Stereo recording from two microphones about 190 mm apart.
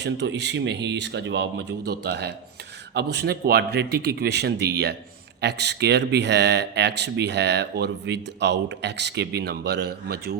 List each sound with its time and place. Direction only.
0.0 s speech: 65° right (ahead or behind)